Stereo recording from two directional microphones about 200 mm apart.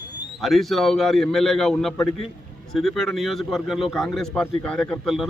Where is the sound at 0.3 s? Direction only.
Centre (ahead or behind).